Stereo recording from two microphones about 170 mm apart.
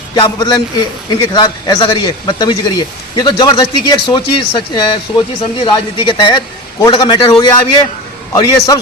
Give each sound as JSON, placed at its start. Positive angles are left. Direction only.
{"t": 0.1, "sound": "a man's voice", "side_deg": 20}